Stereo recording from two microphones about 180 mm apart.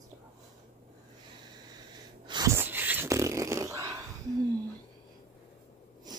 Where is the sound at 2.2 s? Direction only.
20° right (ahead or behind).